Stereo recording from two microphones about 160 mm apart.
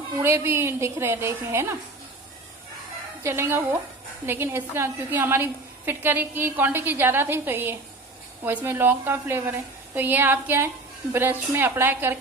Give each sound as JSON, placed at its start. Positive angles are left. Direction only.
{"t": 0.2, "sound": "a woman's voice", "side_deg": -15}
{"t": 3.3, "sound": "a woman's voice", "side_deg": -15}